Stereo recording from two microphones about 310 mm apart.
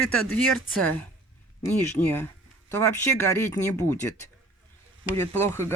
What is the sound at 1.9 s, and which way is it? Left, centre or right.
Speech, centre.